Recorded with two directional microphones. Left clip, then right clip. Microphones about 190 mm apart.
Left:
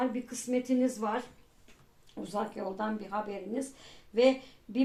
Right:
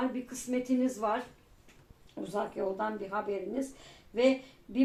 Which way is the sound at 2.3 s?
35° left (ahead or behind).